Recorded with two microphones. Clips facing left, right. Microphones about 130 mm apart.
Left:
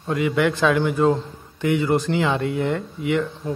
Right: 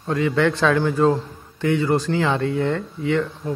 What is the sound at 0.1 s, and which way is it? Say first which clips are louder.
A man's voice: right 1 dB; 15° left (ahead or behind).